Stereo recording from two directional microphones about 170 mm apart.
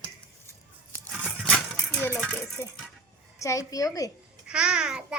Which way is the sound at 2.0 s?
5° left (ahead or behind).